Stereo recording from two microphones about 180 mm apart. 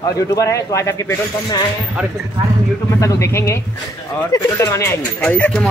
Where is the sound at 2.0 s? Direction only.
5° right (ahead or behind).